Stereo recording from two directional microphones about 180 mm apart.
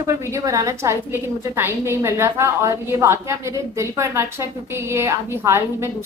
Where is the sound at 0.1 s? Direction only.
15° right (ahead or behind).